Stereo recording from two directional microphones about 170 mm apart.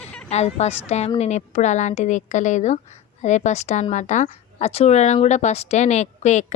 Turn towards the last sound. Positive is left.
turn(degrees=45)  # may be behind; listen again after turning